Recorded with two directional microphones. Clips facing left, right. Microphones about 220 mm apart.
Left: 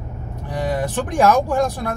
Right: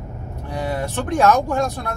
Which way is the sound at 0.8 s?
15° left (ahead or behind).